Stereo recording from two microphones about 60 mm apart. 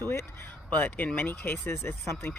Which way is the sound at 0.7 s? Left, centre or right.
Left.